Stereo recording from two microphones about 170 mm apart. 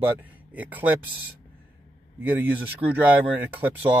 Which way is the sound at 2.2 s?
10° right (ahead or behind).